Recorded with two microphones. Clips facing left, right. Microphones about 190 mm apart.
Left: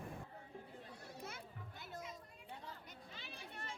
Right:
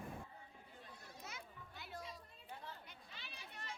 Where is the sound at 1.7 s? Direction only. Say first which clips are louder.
Right 1 dB; 50° left (ahead or behind).